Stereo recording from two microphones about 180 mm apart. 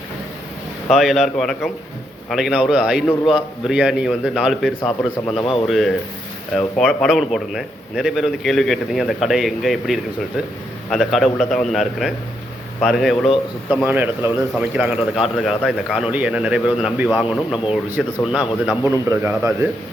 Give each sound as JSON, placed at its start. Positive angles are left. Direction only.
{"t": 0.9, "sound": "a man's voice", "side_deg": 0}
{"t": 5.3, "sound": "speech", "side_deg": 30}
{"t": 5.6, "sound": "a man's voice", "side_deg": 0}